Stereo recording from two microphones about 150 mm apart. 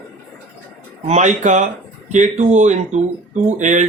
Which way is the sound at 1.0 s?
50° right (ahead or behind).